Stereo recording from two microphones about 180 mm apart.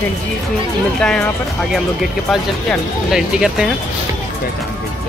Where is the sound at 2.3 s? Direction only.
Centre (ahead or behind).